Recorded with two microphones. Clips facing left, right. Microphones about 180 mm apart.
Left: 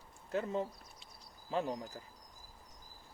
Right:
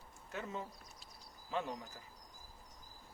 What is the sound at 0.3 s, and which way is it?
Speech, 35° left (ahead or behind).